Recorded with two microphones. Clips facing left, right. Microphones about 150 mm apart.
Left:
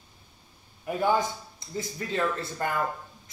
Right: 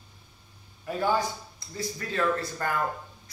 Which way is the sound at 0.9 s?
15° left (ahead or behind).